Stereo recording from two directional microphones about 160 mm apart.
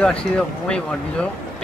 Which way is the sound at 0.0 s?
5° left (ahead or behind).